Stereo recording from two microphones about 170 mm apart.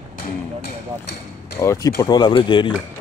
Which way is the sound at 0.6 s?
75° left (ahead or behind).